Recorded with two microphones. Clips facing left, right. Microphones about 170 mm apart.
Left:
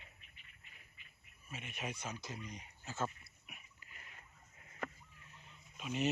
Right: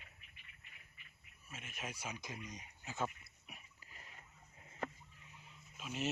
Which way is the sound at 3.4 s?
35° right (ahead or behind).